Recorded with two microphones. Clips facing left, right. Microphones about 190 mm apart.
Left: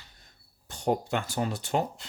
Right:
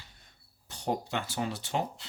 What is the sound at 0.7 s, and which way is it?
Speech, 45° left (ahead or behind).